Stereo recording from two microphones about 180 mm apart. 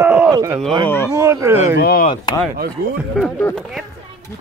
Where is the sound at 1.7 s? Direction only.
60° left (ahead or behind).